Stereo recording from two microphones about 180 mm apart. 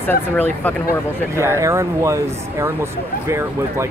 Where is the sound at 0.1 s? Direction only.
10° left (ahead or behind).